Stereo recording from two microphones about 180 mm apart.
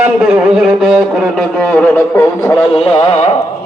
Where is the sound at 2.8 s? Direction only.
35° left (ahead or behind).